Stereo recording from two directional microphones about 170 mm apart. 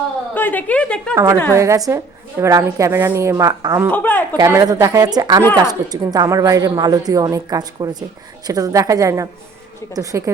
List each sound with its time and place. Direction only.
0.3 s a woman's voice: 10° left (ahead or behind)
1.1 s a woman's voice: 20° right (ahead or behind)
3.9 s a woman's voice: 10° left (ahead or behind)
4.4 s a woman's voice: 20° right (ahead or behind)